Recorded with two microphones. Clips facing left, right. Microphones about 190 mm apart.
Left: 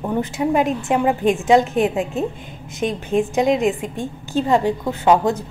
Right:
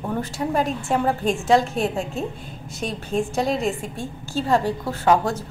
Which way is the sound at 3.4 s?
15° left (ahead or behind).